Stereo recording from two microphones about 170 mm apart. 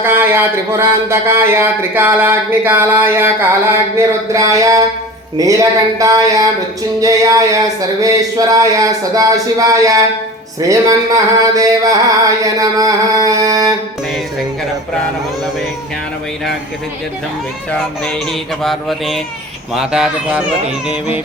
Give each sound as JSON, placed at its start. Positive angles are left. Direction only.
{"t": 0.0, "sound": "speech", "side_deg": -15}
{"t": 18.6, "sound": "speech", "side_deg": 0}